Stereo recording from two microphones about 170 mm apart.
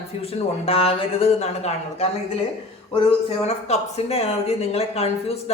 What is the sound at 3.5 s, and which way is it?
Speech, 40° left (ahead or behind).